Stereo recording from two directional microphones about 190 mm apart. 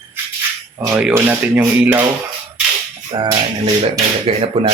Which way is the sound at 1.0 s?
10° right (ahead or behind).